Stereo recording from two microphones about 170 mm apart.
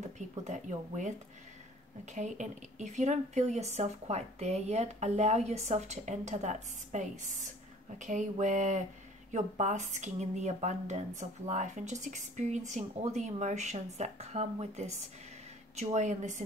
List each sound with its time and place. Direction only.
0.0 s speech: 45° right (ahead or behind)
2.1 s speech: 45° right (ahead or behind)